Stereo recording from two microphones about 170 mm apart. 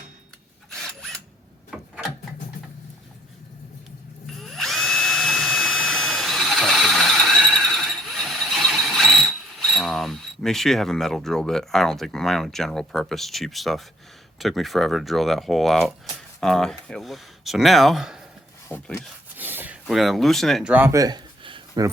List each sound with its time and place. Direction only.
1.7 s a sound: 5° right (ahead or behind)
4.4 s drill: centre (ahead or behind)
14.3 s speech: centre (ahead or behind)
18.7 s speech: 15° left (ahead or behind)
19.4 s speech: 10° right (ahead or behind)
20.7 s a sound: 15° right (ahead or behind)